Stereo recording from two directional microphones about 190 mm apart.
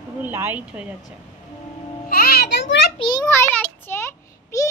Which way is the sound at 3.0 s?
20° left (ahead or behind).